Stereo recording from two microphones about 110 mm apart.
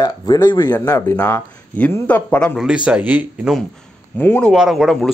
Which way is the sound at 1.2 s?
15° left (ahead or behind).